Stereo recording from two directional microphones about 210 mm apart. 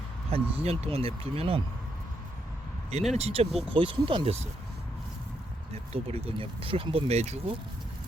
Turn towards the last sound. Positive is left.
turn(degrees=-30)  # may be behind; listen again after turning